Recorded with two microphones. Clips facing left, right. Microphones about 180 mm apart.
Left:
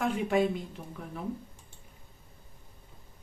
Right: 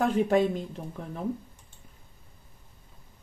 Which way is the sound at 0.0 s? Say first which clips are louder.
Right 5 dB; 40° right (ahead or behind).